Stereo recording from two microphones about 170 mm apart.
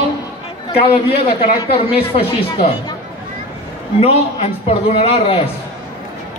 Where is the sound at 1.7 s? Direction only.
35° left (ahead or behind).